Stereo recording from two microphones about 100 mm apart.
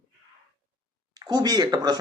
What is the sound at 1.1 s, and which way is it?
Speech, 40° right (ahead or behind).